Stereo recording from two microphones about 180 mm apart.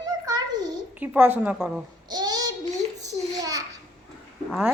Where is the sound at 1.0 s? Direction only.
10° right (ahead or behind).